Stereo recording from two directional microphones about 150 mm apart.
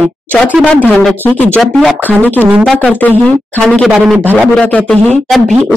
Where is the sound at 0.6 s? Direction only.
5° left (ahead or behind).